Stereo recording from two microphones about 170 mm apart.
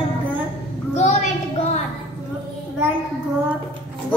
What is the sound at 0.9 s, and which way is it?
Speech, 45° left (ahead or behind).